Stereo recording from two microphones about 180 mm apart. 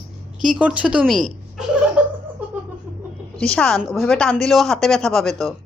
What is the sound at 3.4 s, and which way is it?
Speech, 5° left (ahead or behind).